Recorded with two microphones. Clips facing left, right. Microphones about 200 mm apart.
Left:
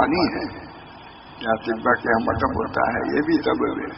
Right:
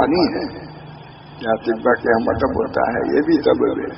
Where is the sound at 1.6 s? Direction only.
40° right (ahead or behind).